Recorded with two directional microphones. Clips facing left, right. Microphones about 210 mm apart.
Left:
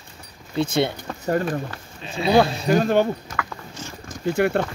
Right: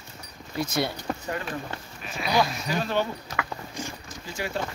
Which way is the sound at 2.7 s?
50° left (ahead or behind).